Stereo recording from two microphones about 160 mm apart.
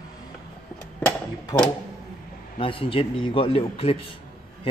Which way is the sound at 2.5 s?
35° left (ahead or behind).